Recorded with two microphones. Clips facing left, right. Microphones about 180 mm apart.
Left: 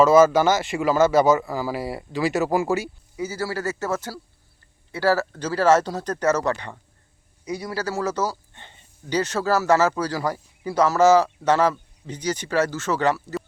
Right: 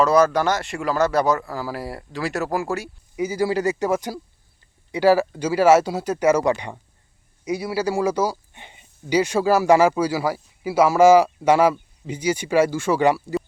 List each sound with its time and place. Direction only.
0.0 s speech: centre (ahead or behind)
3.2 s speech: 15° right (ahead or behind)